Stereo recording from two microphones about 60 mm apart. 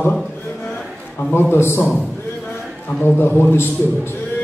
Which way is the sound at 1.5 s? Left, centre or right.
Left.